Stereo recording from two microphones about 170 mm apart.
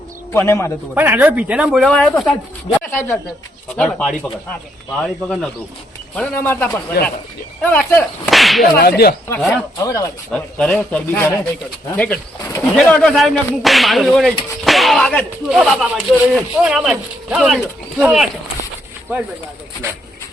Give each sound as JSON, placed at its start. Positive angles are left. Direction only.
{"t": 0.3, "sound": "whip", "side_deg": 15}
{"t": 0.9, "sound": "speech", "side_deg": -10}
{"t": 2.9, "sound": "whip", "side_deg": 10}
{"t": 5.0, "sound": "speech", "side_deg": 5}
{"t": 6.1, "sound": "whip", "side_deg": 10}
{"t": 8.8, "sound": "speech", "side_deg": 65}
{"t": 9.4, "sound": "speech", "side_deg": 0}
{"t": 9.7, "sound": "speech", "side_deg": 20}
{"t": 10.3, "sound": "speech", "side_deg": 5}
{"t": 11.1, "sound": "whip", "side_deg": 15}
{"t": 11.9, "sound": "speech", "side_deg": 10}